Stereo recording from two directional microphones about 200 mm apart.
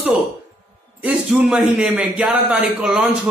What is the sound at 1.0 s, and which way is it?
A man's voice, 5° right (ahead or behind).